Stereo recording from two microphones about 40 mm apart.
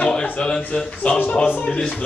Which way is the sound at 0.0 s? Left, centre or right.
Left.